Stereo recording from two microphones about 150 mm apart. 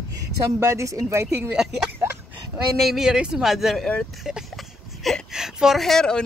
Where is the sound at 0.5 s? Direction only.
20° right (ahead or behind).